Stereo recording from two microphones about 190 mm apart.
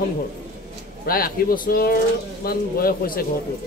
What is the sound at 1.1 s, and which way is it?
Speech, 50° left (ahead or behind).